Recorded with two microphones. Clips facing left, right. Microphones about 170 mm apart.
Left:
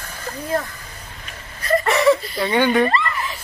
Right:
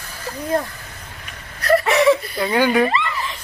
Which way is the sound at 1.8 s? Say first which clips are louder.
Right 1 dB; centre (ahead or behind).